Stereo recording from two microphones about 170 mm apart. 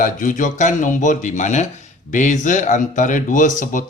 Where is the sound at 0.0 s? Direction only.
50° left (ahead or behind).